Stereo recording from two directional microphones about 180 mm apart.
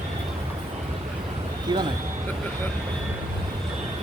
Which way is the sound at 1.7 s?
25° right (ahead or behind).